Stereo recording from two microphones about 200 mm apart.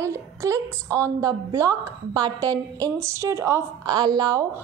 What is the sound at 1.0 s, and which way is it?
A woman's voice, 15° right (ahead or behind).